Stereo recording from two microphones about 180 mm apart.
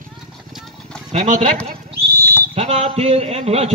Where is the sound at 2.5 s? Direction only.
35° right (ahead or behind).